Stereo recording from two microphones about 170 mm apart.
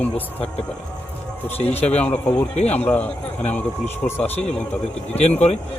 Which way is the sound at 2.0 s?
10° left (ahead or behind).